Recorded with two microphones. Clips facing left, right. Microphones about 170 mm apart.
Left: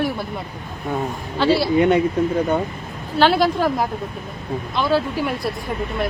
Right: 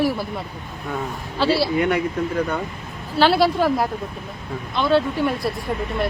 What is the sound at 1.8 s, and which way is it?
Speech, 25° left (ahead or behind).